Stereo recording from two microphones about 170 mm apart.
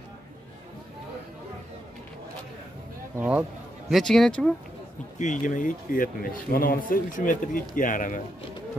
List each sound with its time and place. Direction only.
3.2 s speech: 10° right (ahead or behind)
3.9 s speech: centre (ahead or behind)
5.2 s speech: 45° left (ahead or behind)